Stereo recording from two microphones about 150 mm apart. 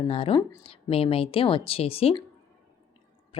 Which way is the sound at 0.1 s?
40° left (ahead or behind).